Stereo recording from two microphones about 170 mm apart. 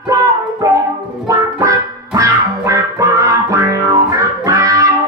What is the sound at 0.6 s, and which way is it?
Music, 20° right (ahead or behind).